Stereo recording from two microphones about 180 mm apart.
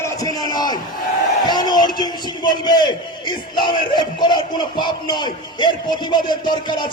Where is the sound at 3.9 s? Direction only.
25° left (ahead or behind).